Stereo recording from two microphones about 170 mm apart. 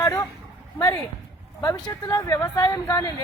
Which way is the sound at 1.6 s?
20° left (ahead or behind).